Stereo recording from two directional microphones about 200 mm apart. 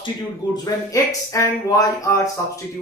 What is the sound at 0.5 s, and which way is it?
Speech, 15° left (ahead or behind).